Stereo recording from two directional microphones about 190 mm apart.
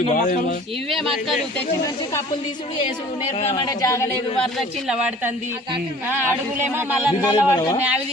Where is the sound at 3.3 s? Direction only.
35° left (ahead or behind).